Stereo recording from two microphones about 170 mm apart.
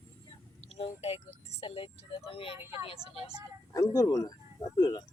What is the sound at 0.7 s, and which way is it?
Speech, 35° left (ahead or behind).